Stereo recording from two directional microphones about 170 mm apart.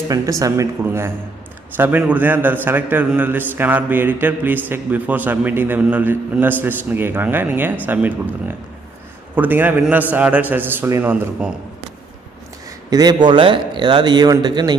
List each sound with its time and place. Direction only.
0.1 s a man's voice: 20° right (ahead or behind)
12.9 s speech: 25° right (ahead or behind)